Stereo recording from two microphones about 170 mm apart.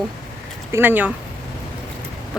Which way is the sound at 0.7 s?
10° right (ahead or behind).